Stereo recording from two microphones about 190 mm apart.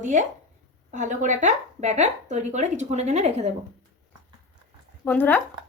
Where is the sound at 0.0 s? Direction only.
40° right (ahead or behind).